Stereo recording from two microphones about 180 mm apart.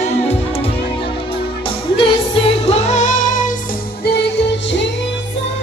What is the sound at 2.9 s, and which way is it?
Music, 45° left (ahead or behind).